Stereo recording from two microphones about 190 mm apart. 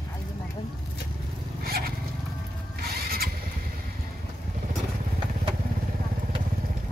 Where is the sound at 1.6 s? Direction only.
55° right (ahead or behind).